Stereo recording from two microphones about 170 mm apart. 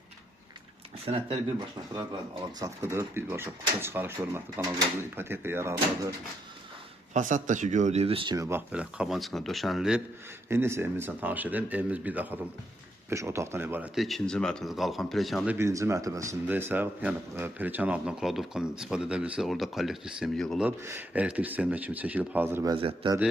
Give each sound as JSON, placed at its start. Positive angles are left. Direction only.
{"t": 1.0, "sound": "speech", "side_deg": -35}
{"t": 2.6, "sound": "speech", "side_deg": -15}
{"t": 7.1, "sound": "speech", "side_deg": -45}
{"t": 8.4, "sound": "speech", "side_deg": -15}
{"t": 10.5, "sound": "speech", "side_deg": -15}
{"t": 15.5, "sound": "speech", "side_deg": -15}
{"t": 20.7, "sound": "speech", "side_deg": -10}
{"t": 22.7, "sound": "a man's voice", "side_deg": -30}